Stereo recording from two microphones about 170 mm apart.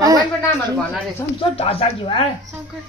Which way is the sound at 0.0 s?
20° right (ahead or behind).